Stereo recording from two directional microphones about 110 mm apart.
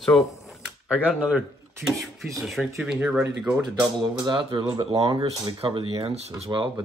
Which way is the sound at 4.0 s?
45° right (ahead or behind).